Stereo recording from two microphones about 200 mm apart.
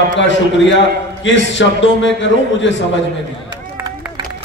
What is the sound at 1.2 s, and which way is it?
A man's voice, 65° left (ahead or behind).